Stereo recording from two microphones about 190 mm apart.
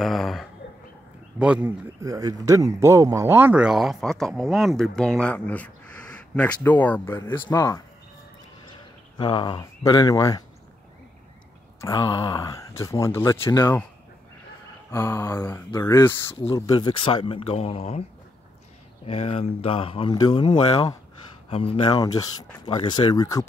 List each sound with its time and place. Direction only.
0.0 s a sound: centre (ahead or behind)
1.4 s speech: 5° right (ahead or behind)
2.0 s speech: 20° right (ahead or behind); by 7.8 s 15° left (ahead or behind)
9.2 s speech: 25° left (ahead or behind)
11.8 s speech: 15° left (ahead or behind)
14.9 s speech: 15° left (ahead or behind); by 18.0 s 30° left (ahead or behind)
19.0 s speech: 30° left (ahead or behind)